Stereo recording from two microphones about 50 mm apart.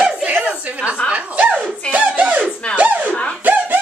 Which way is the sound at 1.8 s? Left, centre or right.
Right.